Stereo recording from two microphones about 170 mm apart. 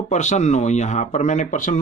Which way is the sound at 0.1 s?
45° left (ahead or behind).